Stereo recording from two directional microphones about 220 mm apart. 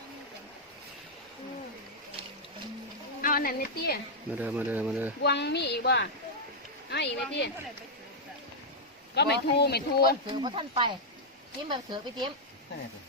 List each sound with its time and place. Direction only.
3.2 s a woman's voice: 40° left (ahead or behind)
4.4 s speech: 10° right (ahead or behind)
5.2 s speech: 50° left (ahead or behind)
9.1 s speech: 50° left (ahead or behind)
10.3 s speech: 20° right (ahead or behind)